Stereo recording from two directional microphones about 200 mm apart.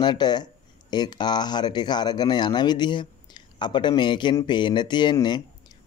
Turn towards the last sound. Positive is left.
turn(degrees=20)  # may be behind; listen again after turning